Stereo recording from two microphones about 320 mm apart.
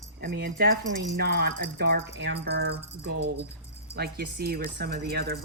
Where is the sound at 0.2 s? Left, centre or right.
Right.